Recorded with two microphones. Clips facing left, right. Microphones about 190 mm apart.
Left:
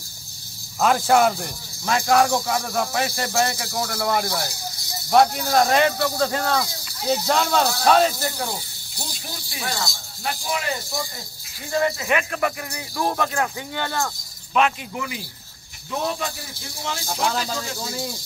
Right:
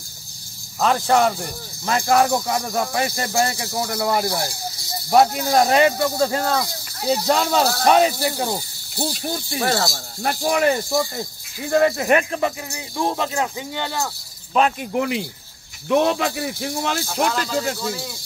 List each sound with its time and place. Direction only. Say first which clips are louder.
0.7 s speech: even; 5° left (ahead or behind); by 8.5 s 15° right (ahead or behind)
9.2 s speech: right 7 dB; 55° right (ahead or behind)
12.3 s speech: right 2 dB; 25° right (ahead or behind)
14.8 s speech: right 9 dB; 55° right (ahead or behind)
15.9 s speech: right 8 dB; 80° right